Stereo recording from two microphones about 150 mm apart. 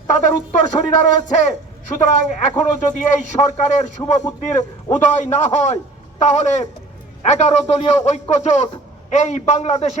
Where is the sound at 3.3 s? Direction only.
50° left (ahead or behind).